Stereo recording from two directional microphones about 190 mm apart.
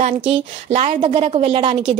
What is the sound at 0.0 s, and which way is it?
A woman's voice, 35° right (ahead or behind).